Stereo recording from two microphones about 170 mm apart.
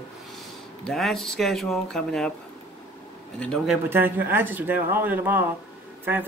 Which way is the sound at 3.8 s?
15° right (ahead or behind).